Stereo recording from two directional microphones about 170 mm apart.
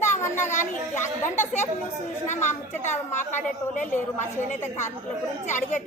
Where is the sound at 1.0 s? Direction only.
15° left (ahead or behind).